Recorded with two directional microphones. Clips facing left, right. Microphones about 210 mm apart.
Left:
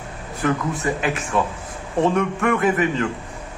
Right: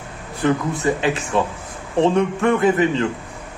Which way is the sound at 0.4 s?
30° right (ahead or behind).